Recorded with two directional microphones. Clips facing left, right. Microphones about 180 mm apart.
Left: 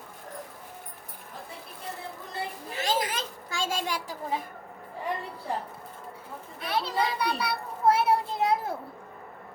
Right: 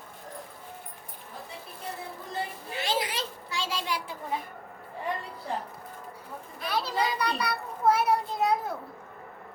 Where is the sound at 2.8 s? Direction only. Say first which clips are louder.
Left 1 dB; 45° left (ahead or behind).